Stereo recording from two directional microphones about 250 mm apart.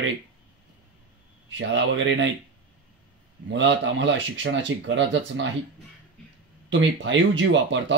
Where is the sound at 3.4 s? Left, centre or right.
Right.